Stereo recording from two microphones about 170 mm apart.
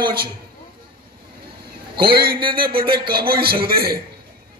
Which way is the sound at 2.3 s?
30° right (ahead or behind).